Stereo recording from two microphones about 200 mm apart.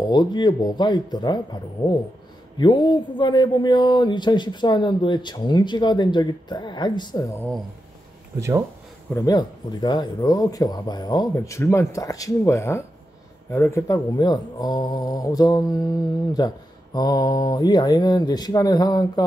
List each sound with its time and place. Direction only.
0.0 s speech: 20° left (ahead or behind)
8.4 s speech: 15° right (ahead or behind)
9.1 s speech: 20° left (ahead or behind)